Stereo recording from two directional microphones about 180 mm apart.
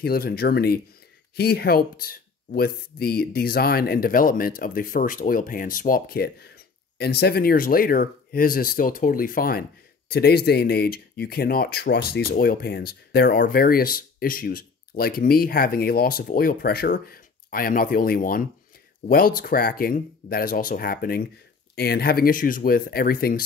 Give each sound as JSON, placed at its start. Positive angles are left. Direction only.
{"t": 0.0, "sound": "speech", "side_deg": 55}